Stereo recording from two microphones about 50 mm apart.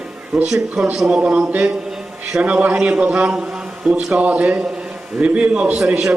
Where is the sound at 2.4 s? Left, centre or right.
Right.